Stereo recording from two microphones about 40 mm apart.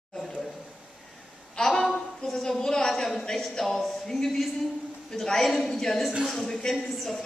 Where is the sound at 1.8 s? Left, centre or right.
Centre.